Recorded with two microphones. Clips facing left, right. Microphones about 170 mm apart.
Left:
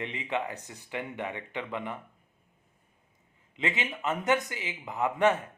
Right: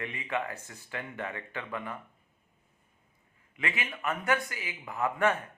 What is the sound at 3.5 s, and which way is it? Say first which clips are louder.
Speech: left 3 dB; 20° left (ahead or behind).